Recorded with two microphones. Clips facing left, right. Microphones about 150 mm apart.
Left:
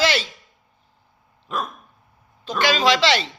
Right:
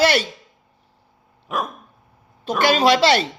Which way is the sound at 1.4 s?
15° right (ahead or behind).